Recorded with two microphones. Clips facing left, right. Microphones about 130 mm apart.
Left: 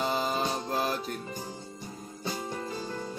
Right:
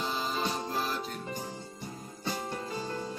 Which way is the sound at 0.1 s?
55° left (ahead or behind).